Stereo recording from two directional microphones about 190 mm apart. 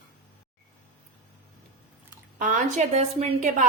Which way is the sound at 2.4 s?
40° right (ahead or behind).